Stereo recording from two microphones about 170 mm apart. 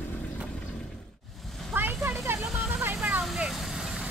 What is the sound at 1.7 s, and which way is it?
Vehicle, 10° right (ahead or behind).